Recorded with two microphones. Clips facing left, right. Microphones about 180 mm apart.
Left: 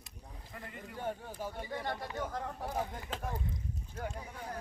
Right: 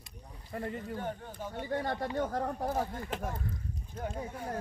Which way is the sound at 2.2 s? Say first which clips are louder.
Right 6 dB; 45° right (ahead or behind).